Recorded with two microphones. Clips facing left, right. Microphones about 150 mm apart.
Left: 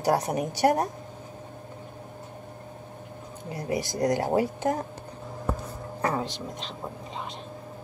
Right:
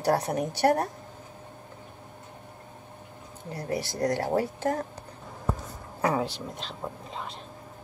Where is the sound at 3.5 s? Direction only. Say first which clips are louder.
Left 2 dB; 10° left (ahead or behind).